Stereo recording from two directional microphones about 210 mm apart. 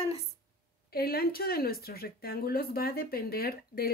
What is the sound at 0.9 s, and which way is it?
A woman's voice, 45° left (ahead or behind).